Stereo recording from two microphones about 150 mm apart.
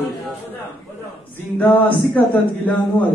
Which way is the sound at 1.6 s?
10° left (ahead or behind).